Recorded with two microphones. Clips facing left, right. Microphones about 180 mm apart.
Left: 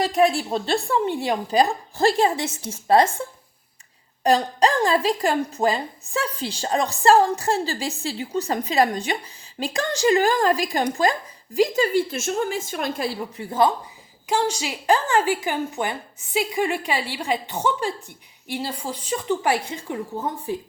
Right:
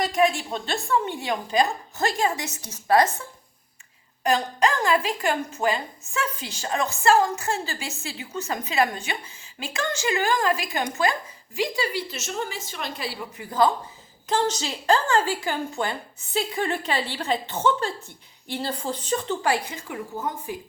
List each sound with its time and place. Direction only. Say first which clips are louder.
0.0 s a woman's voice: left 3 dB; 35° left (ahead or behind)
11.8 s a woman's voice: left 7 dB; 50° left (ahead or behind)
13.3 s speech: left 1 dB; 25° left (ahead or behind)
14.3 s a woman's voice: left 1 dB; 10° left (ahead or behind); by 20.6 s 30° left (ahead or behind)